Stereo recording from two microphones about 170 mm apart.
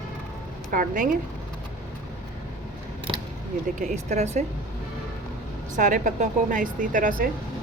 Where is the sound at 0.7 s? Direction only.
50° right (ahead or behind).